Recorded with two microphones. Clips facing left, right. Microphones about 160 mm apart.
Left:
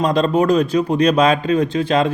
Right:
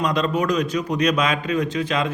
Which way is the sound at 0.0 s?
30° left (ahead or behind).